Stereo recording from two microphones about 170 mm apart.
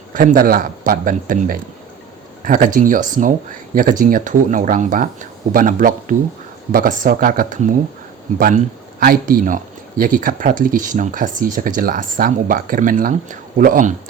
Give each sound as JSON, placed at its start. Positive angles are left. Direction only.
{"t": 0.1, "sound": "speech", "side_deg": -55}